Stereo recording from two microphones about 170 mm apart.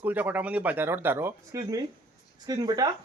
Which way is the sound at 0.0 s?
10° right (ahead or behind).